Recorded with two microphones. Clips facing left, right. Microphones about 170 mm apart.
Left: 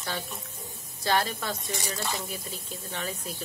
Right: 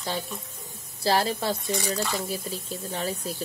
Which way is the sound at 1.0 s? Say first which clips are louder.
Right 4 dB; 30° right (ahead or behind).